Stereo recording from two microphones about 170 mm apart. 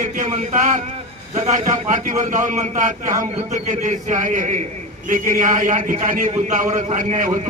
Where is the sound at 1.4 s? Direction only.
50° right (ahead or behind).